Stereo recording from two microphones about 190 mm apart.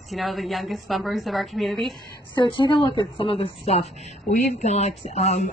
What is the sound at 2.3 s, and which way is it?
A woman's voice, 25° left (ahead or behind).